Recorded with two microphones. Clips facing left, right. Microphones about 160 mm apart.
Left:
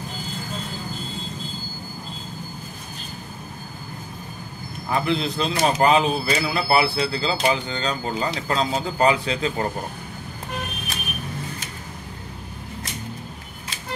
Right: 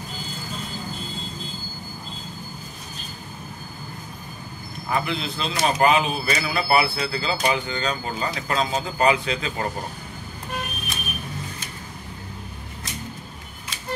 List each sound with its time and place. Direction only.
4.9 s speech: 35° left (ahead or behind)